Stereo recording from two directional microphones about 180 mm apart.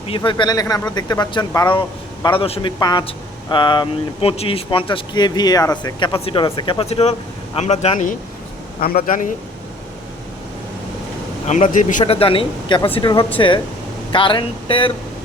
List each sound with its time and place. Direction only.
0.3 s speech: 25° left (ahead or behind); by 9.3 s 50° left (ahead or behind)
11.4 s speech: 40° left (ahead or behind)
12.1 s speech: 30° left (ahead or behind)